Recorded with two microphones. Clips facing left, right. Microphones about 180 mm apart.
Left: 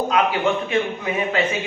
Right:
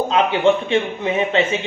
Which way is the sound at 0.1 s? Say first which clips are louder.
Right 6 dB; 25° right (ahead or behind).